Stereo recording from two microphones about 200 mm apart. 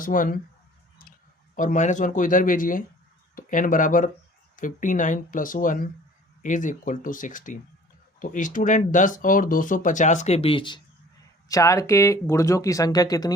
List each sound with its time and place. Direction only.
0.0 s speech: 45° left (ahead or behind)
1.5 s speech: 40° left (ahead or behind); by 13.3 s 20° left (ahead or behind)